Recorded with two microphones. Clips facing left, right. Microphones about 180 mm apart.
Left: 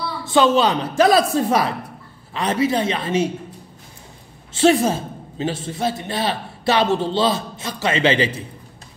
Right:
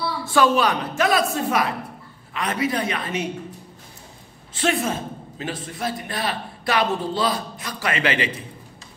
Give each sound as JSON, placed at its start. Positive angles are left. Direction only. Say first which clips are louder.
{"t": 0.2, "sound": "a woman's voice", "louder": "left 3 dB", "side_deg": 20}
{"t": 4.6, "sound": "a man's voice", "louder": "left 7 dB", "side_deg": 30}